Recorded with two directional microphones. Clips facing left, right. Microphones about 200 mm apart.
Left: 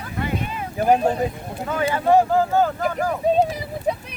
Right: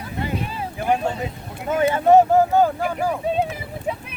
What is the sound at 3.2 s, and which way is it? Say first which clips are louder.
Speech: left 7 dB; 40° left (ahead or behind).